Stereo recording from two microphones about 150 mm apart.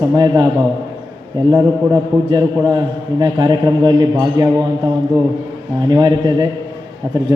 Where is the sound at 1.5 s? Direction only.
20° right (ahead or behind).